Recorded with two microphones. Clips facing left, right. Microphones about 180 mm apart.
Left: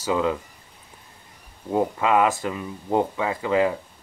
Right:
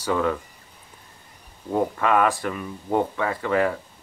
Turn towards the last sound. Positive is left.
turn(degrees=15)  # may be behind; listen again after turning